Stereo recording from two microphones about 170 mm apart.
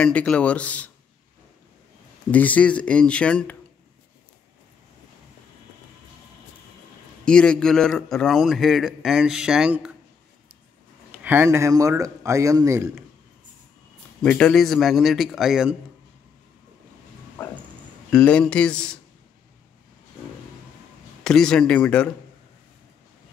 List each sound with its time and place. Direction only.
0.0 s speech: 5° left (ahead or behind)
2.3 s speech: 10° left (ahead or behind)
7.2 s a man's voice: 5° left (ahead or behind)
11.2 s a man's voice: 15° right (ahead or behind)
14.2 s a man's voice: 5° left (ahead or behind)
18.1 s a man's voice: 5° left (ahead or behind)
21.2 s a man's voice: 5° left (ahead or behind)